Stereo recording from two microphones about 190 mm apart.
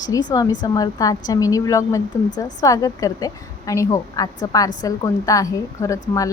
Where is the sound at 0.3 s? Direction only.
20° left (ahead or behind).